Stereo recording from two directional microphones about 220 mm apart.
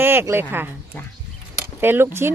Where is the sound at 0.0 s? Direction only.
10° right (ahead or behind).